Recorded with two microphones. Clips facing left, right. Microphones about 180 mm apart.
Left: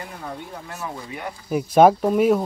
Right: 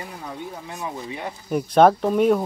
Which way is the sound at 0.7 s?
20° right (ahead or behind).